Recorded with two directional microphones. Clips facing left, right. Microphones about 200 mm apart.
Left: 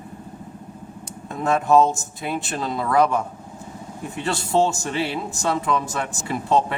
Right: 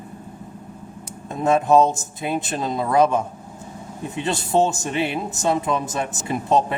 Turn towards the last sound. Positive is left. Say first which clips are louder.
# right 1 dB
turn(degrees=-20)  # may be behind; listen again after turning